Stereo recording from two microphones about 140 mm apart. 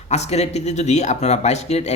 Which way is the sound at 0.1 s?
50° left (ahead or behind).